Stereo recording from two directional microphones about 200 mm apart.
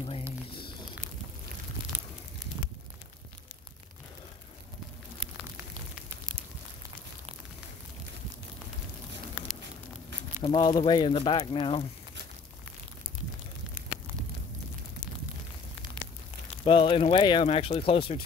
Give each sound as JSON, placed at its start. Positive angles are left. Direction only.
{"t": 9.4, "sound": "a sound", "side_deg": -5}
{"t": 10.4, "sound": "speech", "side_deg": 25}
{"t": 16.6, "sound": "speech", "side_deg": 25}